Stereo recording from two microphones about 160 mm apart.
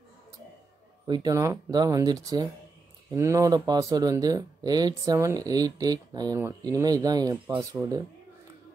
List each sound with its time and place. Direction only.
1.0 s speech: 25° right (ahead or behind)